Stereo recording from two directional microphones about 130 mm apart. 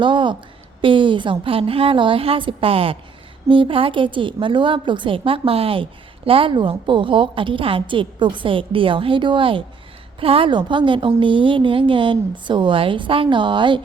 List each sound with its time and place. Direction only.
0.0 s a woman's voice: 40° right (ahead or behind)